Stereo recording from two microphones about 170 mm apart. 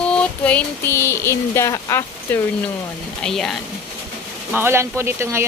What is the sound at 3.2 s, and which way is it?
Speech, 5° left (ahead or behind).